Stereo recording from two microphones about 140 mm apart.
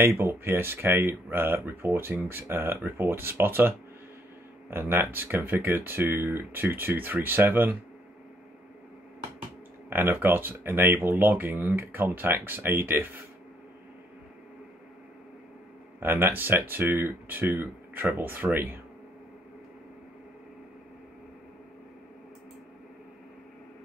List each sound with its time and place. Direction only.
0.0 s speech: 15° right (ahead or behind)
9.8 s speech: 15° right (ahead or behind)
16.0 s speech: 15° right (ahead or behind)